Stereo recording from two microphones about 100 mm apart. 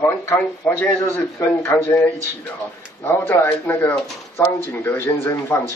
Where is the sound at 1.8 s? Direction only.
15° left (ahead or behind).